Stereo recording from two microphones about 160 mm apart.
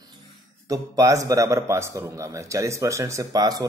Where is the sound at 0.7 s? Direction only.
20° right (ahead or behind).